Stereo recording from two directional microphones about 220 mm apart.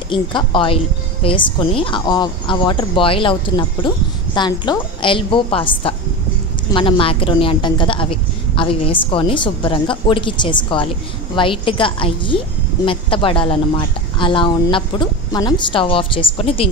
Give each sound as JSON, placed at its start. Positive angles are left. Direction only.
{"t": 0.1, "sound": "a woman's voice", "side_deg": 20}